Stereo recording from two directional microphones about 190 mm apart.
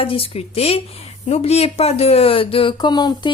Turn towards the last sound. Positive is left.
turn(degrees=20)  # may be behind; listen again after turning